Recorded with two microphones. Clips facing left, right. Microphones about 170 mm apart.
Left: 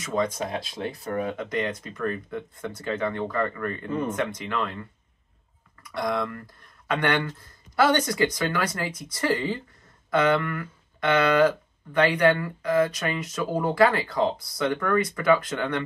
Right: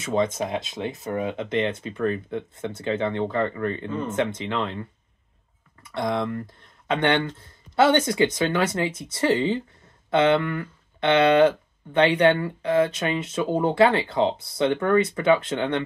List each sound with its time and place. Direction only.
0.0 s speech: 25° right (ahead or behind)
5.9 s speech: 25° right (ahead or behind)